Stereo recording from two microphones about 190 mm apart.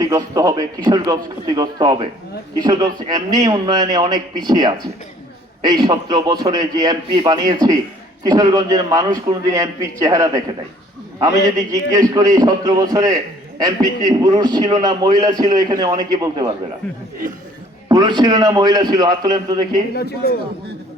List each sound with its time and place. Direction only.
0.0 s a man's voice: 20° right (ahead or behind)
17.8 s a man's voice: 20° right (ahead or behind)
19.9 s a man's voice: 55° left (ahead or behind)